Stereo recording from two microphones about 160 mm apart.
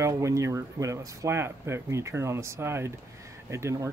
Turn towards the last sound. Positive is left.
turn(degrees=-15)  # may be behind; listen again after turning